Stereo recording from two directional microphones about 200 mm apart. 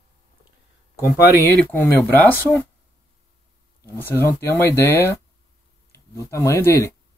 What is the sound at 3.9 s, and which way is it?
Speech, 15° left (ahead or behind).